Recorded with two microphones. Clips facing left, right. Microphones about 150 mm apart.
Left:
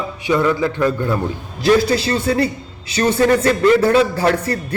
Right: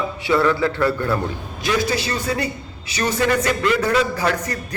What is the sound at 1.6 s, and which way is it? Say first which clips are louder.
A man's voice: left 7 dB; 30° left (ahead or behind).